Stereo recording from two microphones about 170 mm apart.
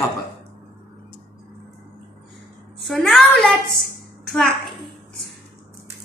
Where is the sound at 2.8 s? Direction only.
Centre (ahead or behind).